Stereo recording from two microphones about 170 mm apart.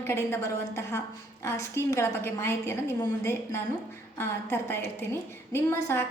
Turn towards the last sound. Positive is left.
turn(degrees=15)  # may be behind; listen again after turning